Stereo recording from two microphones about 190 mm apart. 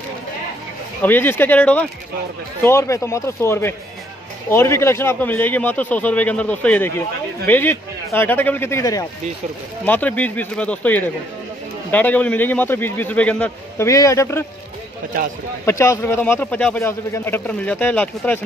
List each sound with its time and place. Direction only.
1.0 s speech: 10° left (ahead or behind)
15.6 s speech: 15° left (ahead or behind)